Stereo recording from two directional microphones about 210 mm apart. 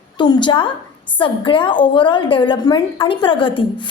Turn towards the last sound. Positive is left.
turn(degrees=25)  # may be behind; listen again after turning